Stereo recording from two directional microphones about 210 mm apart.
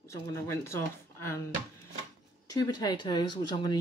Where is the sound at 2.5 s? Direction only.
20° left (ahead or behind).